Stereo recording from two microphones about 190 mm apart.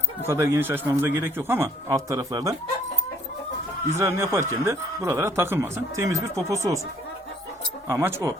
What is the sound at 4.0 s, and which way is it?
Speech, 15° right (ahead or behind).